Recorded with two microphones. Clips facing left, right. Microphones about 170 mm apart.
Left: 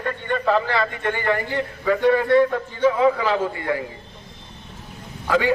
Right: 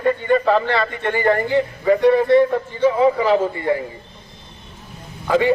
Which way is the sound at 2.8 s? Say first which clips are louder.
Right 2 dB; 30° right (ahead or behind).